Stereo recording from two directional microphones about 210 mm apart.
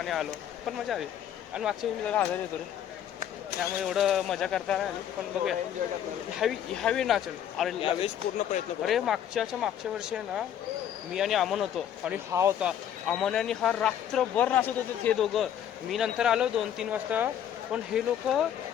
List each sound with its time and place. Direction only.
0.0 s speech: centre (ahead or behind)
1.5 s speech: 5° right (ahead or behind)
3.6 s speech: centre (ahead or behind)
5.8 s speech: 45° right (ahead or behind)
6.4 s speech: centre (ahead or behind)
7.8 s speech: 30° left (ahead or behind)
8.8 s speech: centre (ahead or behind)
12.3 s speech: 10° right (ahead or behind)